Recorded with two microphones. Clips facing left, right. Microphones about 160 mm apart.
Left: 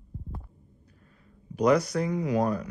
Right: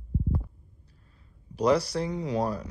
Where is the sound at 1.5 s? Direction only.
30° right (ahead or behind).